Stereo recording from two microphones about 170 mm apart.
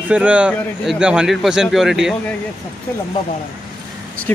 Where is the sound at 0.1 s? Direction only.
5° right (ahead or behind).